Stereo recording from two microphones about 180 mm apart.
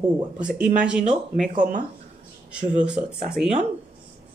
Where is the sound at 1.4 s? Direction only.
45° right (ahead or behind).